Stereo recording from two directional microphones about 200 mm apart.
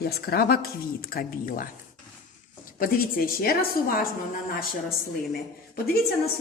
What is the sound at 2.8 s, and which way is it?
A woman's voice, 50° left (ahead or behind).